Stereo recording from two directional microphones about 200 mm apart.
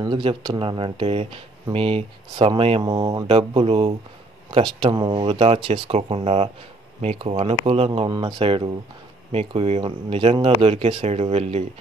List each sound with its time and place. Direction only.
0.0 s speech: 25° right (ahead or behind)